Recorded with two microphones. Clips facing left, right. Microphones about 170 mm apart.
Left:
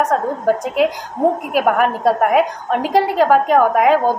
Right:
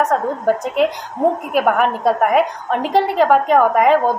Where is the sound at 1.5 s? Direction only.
5° left (ahead or behind).